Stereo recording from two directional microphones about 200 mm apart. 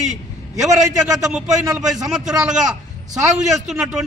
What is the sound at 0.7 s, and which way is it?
Speech, 15° right (ahead or behind).